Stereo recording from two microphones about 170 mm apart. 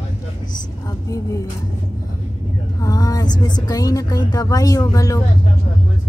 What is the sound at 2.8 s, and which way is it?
Speech, 20° left (ahead or behind).